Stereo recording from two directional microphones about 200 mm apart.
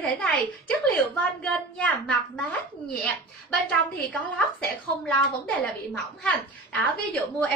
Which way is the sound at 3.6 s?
5° left (ahead or behind).